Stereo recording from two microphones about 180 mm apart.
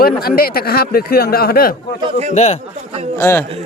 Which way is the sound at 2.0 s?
35° right (ahead or behind).